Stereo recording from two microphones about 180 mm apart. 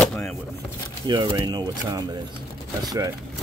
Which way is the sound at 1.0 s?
25° right (ahead or behind).